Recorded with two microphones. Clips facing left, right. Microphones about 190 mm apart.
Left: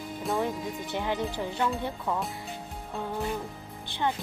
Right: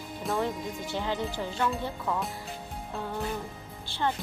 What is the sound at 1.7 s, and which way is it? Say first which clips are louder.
Speech: left 1 dB; centre (ahead or behind).